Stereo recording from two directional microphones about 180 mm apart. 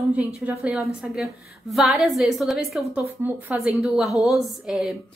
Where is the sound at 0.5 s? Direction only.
5° right (ahead or behind).